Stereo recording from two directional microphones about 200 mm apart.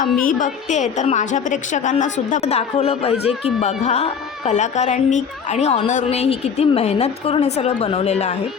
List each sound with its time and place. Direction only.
0.3 s a woman's voice: 40° left (ahead or behind)